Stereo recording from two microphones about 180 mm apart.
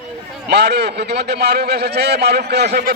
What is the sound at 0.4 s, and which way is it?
A man's voice, 65° right (ahead or behind).